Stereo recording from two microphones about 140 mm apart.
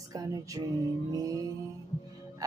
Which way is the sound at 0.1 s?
25° right (ahead or behind).